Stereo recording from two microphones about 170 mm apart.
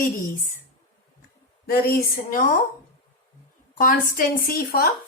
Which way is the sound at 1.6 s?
60° left (ahead or behind).